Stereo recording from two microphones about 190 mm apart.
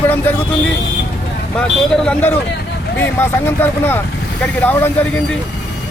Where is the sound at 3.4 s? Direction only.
10° left (ahead or behind).